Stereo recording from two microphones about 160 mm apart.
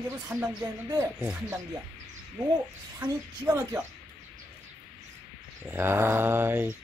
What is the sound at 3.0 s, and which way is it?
Speech, 25° right (ahead or behind).